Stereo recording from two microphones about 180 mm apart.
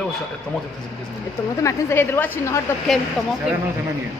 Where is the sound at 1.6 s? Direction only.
15° left (ahead or behind).